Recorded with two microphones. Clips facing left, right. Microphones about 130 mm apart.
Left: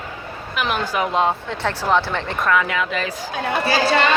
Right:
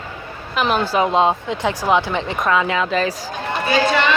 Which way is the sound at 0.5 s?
25° right (ahead or behind).